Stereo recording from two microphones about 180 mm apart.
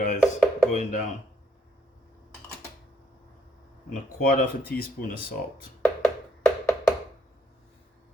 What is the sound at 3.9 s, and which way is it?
Speech, 50° left (ahead or behind).